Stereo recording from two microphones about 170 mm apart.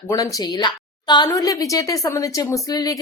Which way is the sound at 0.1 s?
20° left (ahead or behind).